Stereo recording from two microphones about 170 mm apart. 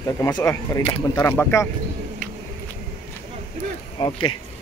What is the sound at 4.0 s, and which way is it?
Speech, 30° left (ahead or behind).